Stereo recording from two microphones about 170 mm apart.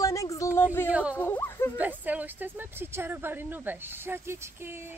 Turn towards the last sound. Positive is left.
turn(degrees=-15)  # may be behind; listen again after turning